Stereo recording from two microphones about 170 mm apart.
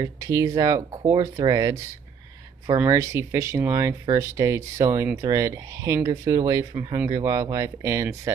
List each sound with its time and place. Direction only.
0.0 s speech: 20° right (ahead or behind)